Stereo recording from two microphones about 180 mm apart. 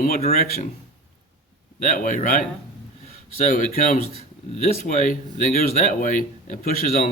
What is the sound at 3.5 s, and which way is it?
Speech, 45° left (ahead or behind).